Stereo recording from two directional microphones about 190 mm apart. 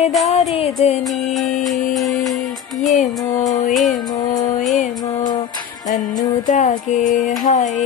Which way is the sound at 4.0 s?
20° left (ahead or behind).